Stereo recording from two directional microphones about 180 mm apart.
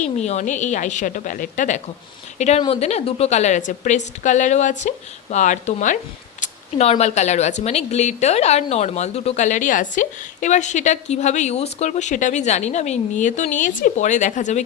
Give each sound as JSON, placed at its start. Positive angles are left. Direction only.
{"t": 0.0, "sound": "a woman's voice", "side_deg": 40}